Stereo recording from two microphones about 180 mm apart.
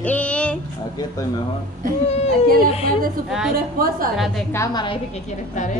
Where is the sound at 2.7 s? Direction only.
35° left (ahead or behind).